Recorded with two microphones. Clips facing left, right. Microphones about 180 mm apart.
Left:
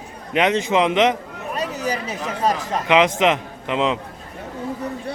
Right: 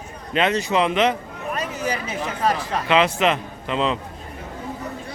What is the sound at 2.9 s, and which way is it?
A man's voice, 15° left (ahead or behind).